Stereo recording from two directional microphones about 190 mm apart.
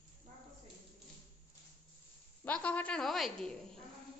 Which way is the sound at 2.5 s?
5° left (ahead or behind).